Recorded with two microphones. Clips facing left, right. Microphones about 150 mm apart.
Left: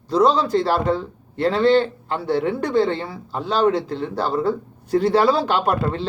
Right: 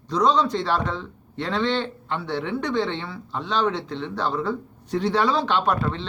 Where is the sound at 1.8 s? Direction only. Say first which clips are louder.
Left 5 dB; 35° left (ahead or behind).